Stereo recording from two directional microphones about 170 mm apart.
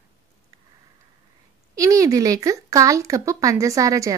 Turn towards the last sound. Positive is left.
turn(degrees=-20)  # may be behind; listen again after turning